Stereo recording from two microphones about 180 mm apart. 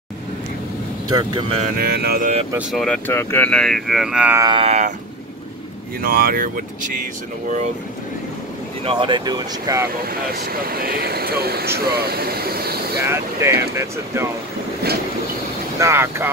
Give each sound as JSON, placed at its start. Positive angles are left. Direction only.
{"t": 1.1, "sound": "speech", "side_deg": -25}
{"t": 1.8, "sound": "speech", "side_deg": -60}
{"t": 2.7, "sound": "speech", "side_deg": 5}
{"t": 3.1, "sound": "speech", "side_deg": 15}
{"t": 4.4, "sound": "a sound", "side_deg": -25}
{"t": 5.9, "sound": "speech", "side_deg": -55}
{"t": 8.8, "sound": "speech", "side_deg": -25}
{"t": 10.0, "sound": "speech", "side_deg": -55}
{"t": 13.0, "sound": "speech", "side_deg": -15}
{"t": 15.8, "sound": "speech", "side_deg": -15}